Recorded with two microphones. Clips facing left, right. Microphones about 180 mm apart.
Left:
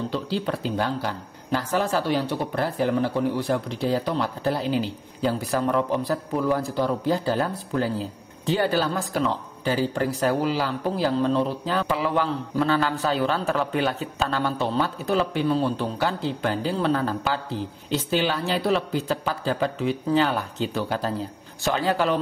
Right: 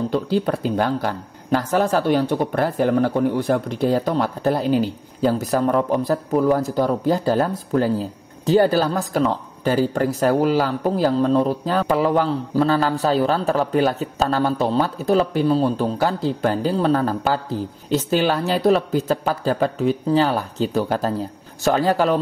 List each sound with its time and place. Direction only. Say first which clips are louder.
0.1 s speech: right 6 dB; 45° right (ahead or behind)